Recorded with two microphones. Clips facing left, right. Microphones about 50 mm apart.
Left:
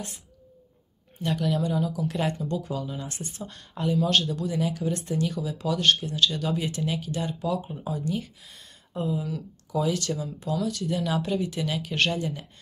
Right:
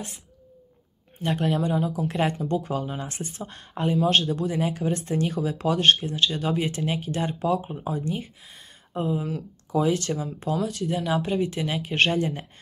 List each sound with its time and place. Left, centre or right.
1.2 s speech: right